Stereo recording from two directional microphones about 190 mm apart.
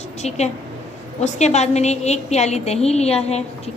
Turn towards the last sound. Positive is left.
turn(degrees=35)  # may be behind; listen again after turning